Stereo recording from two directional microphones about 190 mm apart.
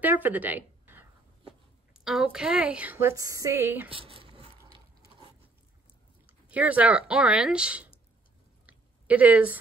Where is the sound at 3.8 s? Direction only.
30° right (ahead or behind).